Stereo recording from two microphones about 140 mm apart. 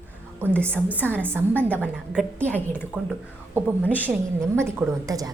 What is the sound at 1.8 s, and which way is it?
A woman's voice, 5° left (ahead or behind).